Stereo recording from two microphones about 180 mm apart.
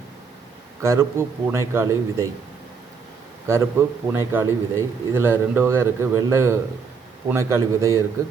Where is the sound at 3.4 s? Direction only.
15° right (ahead or behind).